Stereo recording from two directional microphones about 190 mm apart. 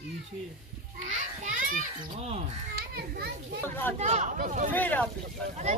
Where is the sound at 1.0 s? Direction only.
40° right (ahead or behind).